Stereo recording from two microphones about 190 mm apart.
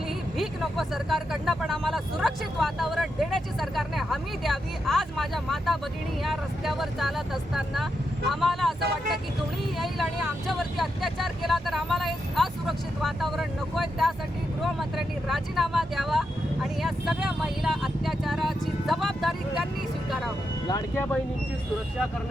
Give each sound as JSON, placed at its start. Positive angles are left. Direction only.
{"t": 0.3, "sound": "speech", "side_deg": 0}
{"t": 9.7, "sound": "speech", "side_deg": 0}
{"t": 16.8, "sound": "vehicle", "side_deg": 0}
{"t": 20.7, "sound": "speech", "side_deg": 20}